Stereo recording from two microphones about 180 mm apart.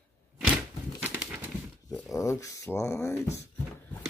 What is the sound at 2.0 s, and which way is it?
Speech, 15° left (ahead or behind).